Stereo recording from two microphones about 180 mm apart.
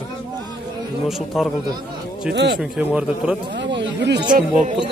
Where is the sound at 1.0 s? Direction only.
Centre (ahead or behind).